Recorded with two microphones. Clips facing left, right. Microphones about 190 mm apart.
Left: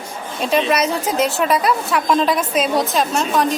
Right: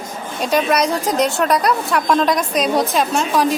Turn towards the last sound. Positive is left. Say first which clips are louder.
# right 1 dB
turn(degrees=0)  # may be behind; listen again after turning